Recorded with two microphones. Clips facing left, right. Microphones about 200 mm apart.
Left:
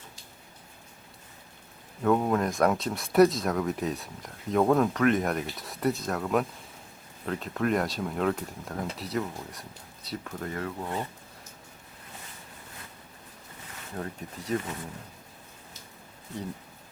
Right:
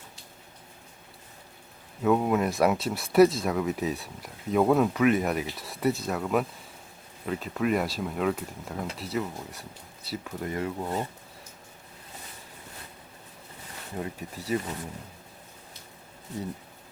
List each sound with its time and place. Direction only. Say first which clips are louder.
2.0 s speech: right 1 dB; 5° right (ahead or behind)
10.5 s speech: right 3 dB; 15° right (ahead or behind)
13.9 s speech: right 2 dB; 5° right (ahead or behind)